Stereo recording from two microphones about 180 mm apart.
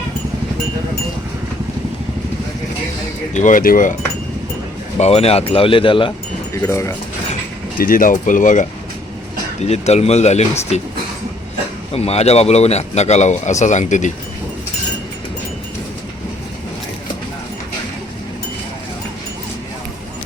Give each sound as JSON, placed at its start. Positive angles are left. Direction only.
{"t": 3.3, "sound": "speech", "side_deg": 45}
{"t": 4.9, "sound": "speech", "side_deg": 35}
{"t": 6.5, "sound": "speech", "side_deg": 15}
{"t": 7.8, "sound": "speech", "side_deg": 50}
{"t": 11.9, "sound": "speech", "side_deg": 35}